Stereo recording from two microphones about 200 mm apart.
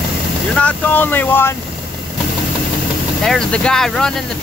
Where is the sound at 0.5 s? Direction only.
5° left (ahead or behind).